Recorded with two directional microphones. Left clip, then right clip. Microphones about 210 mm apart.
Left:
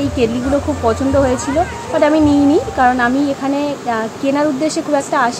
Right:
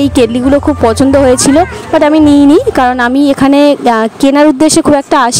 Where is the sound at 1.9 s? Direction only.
55° right (ahead or behind).